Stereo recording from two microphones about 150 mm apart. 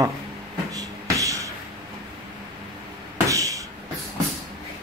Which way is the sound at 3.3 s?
20° right (ahead or behind).